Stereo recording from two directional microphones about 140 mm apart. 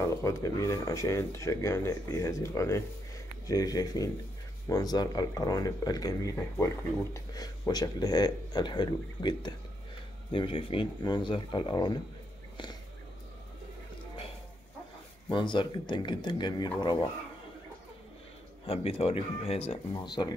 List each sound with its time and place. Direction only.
0.0 s speech: 20° left (ahead or behind)
15.3 s speech: 35° left (ahead or behind)
18.7 s speech: 40° left (ahead or behind)
19.9 s speech: 30° left (ahead or behind)